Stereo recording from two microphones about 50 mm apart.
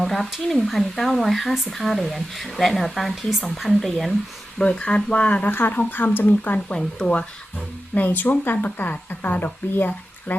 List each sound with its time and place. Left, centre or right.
0.0 s speech: centre
4.6 s speech: centre
5.5 s speech: left
6.7 s speech: centre
7.9 s speech: left